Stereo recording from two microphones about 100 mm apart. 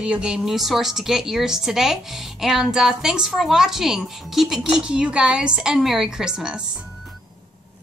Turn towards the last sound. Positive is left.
turn(degrees=-10)  # may be behind; listen again after turning